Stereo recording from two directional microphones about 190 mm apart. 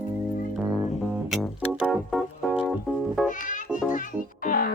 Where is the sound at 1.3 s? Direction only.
Centre (ahead or behind).